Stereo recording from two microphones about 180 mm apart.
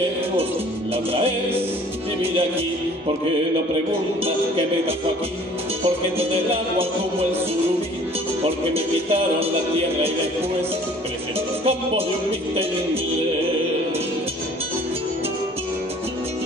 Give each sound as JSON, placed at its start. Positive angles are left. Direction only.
{"t": 6.1, "sound": "music", "side_deg": -35}
{"t": 8.7, "sound": "music", "side_deg": -35}